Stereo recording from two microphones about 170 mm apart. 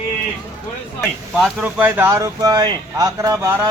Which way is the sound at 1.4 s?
10° right (ahead or behind).